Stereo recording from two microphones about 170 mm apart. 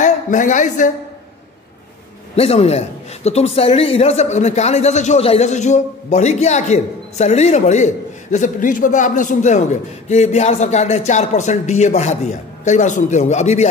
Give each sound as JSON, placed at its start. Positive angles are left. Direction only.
{"t": 0.0, "sound": "speech", "side_deg": 45}
{"t": 2.3, "sound": "a man's voice", "side_deg": 35}